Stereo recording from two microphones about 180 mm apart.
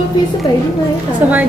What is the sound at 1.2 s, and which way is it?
Speech, 10° right (ahead or behind).